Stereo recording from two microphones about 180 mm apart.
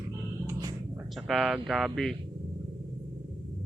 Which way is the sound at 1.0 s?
Centre (ahead or behind).